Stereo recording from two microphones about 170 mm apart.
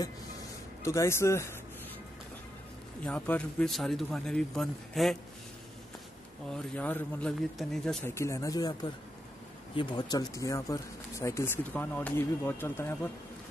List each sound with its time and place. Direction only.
0.8 s speech: 15° left (ahead or behind)
3.0 s speech: 5° left (ahead or behind)
6.5 s speech: 10° left (ahead or behind)
8.1 s speech: 15° left (ahead or behind)